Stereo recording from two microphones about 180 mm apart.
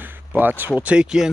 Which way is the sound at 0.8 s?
5° right (ahead or behind).